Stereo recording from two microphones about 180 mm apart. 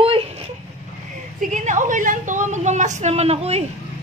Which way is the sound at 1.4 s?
45° right (ahead or behind).